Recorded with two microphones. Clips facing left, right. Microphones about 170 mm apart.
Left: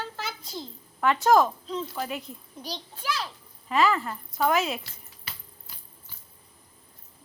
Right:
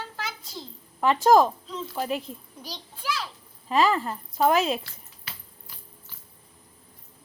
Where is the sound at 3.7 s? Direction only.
35° right (ahead or behind).